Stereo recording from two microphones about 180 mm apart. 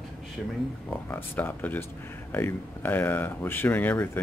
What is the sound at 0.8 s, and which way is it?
Speech, 10° left (ahead or behind).